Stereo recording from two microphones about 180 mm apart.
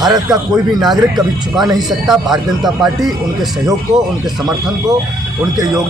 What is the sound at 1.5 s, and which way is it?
A man's voice, centre (ahead or behind).